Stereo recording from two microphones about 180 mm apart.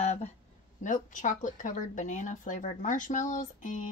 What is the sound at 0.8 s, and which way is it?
Speech, 45° left (ahead or behind).